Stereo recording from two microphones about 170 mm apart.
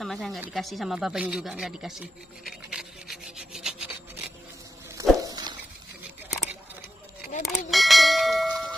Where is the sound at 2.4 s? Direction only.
Centre (ahead or behind).